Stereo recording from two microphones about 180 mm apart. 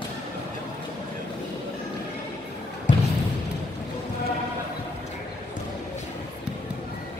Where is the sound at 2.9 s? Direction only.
45° left (ahead or behind).